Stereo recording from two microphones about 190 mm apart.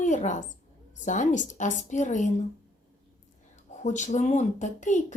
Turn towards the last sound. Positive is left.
turn(degrees=40)  # may be behind; listen again after turning